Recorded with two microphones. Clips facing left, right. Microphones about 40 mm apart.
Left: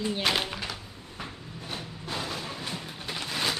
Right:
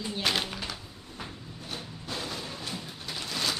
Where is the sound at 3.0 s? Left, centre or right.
Left.